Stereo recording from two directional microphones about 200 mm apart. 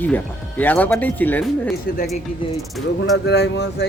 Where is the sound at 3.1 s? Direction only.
55° left (ahead or behind).